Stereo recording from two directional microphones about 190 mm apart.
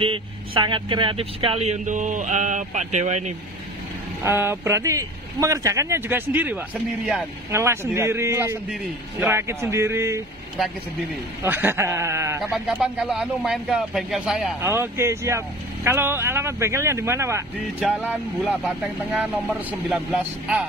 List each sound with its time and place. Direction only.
0.0 s speech: 25° right (ahead or behind)
4.2 s speech: 10° right (ahead or behind)
10.6 s speech: centre (ahead or behind)
11.4 s speech: 10° right (ahead or behind)
12.4 s speech: centre (ahead or behind)
14.6 s speech: 15° right (ahead or behind)
19.9 s speech: 5° right (ahead or behind)